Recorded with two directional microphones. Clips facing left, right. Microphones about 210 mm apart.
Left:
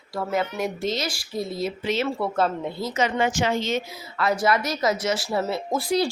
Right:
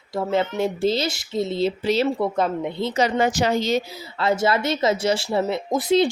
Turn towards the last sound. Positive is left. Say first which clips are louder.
# right 4 dB
turn(degrees=-20)  # may be behind; listen again after turning